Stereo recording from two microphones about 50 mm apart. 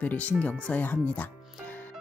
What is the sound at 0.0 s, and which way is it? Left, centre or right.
Speech, left.